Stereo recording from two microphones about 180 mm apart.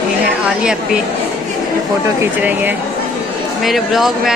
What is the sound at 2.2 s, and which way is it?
Speech, 10° right (ahead or behind).